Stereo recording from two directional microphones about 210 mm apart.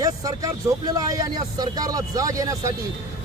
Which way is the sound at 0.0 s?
15° right (ahead or behind).